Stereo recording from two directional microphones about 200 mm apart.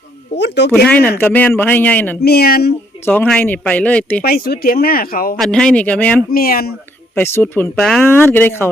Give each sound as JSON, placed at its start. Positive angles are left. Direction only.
{"t": 0.3, "sound": "speech", "side_deg": 60}
{"t": 0.9, "sound": "speech", "side_deg": 10}
{"t": 2.2, "sound": "speech", "side_deg": 50}
{"t": 3.1, "sound": "speech", "side_deg": 5}
{"t": 4.2, "sound": "speech", "side_deg": 50}
{"t": 5.4, "sound": "speech", "side_deg": 5}
{"t": 6.3, "sound": "speech", "side_deg": 50}
{"t": 7.2, "sound": "speech", "side_deg": 10}